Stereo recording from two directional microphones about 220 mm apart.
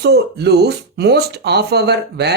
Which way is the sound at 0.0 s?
50° right (ahead or behind).